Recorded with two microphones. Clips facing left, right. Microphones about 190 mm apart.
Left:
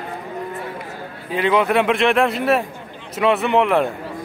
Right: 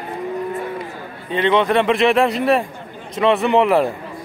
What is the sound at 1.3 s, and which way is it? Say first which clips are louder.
A man's voice: right 1 dB; 5° left (ahead or behind).